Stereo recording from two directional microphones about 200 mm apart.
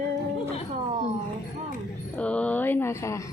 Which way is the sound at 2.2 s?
5° left (ahead or behind).